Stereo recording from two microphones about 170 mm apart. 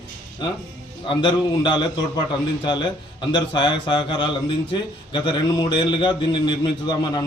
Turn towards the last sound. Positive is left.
turn(degrees=25)  # may be behind; listen again after turning